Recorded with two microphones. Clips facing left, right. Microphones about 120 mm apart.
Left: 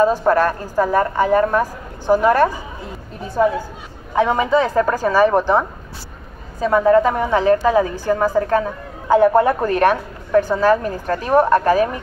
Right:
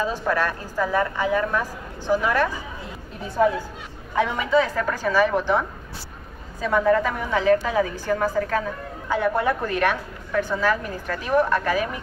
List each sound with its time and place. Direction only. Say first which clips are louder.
0.0 s a woman's voice: left 9 dB; 45° left (ahead or behind)
4.1 s a woman's voice: left 5 dB; 35° left (ahead or behind)